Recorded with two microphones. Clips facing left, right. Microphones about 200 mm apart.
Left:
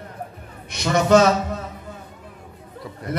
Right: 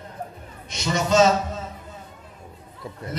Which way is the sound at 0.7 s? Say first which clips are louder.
Left 6 dB; 60° left (ahead or behind).